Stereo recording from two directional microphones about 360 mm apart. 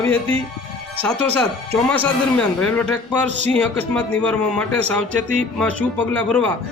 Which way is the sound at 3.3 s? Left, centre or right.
Centre.